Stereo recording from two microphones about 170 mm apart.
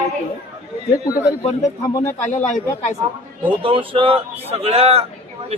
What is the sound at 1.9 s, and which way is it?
Speech, 20° left (ahead or behind).